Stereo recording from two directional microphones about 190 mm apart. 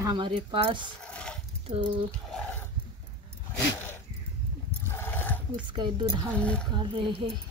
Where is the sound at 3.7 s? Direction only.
10° left (ahead or behind).